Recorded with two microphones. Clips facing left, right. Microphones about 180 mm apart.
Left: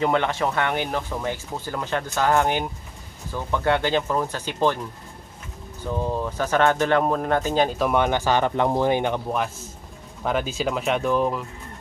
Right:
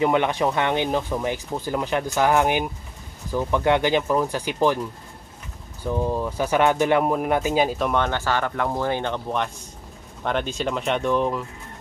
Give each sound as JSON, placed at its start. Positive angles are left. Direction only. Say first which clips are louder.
{"t": 0.0, "sound": "speech", "louder": "right 2 dB", "side_deg": -15}
{"t": 6.0, "sound": "speech", "louder": "right 1 dB", "side_deg": -10}
{"t": 7.8, "sound": "speech", "louder": "left 2 dB", "side_deg": 10}